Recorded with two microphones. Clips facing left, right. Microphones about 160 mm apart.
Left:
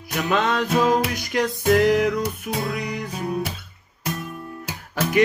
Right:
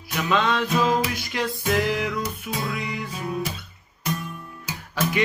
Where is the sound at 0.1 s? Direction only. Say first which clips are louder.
Left 1 dB; 50° left (ahead or behind).